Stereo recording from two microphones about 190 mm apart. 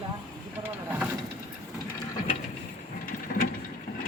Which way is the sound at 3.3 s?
50° left (ahead or behind).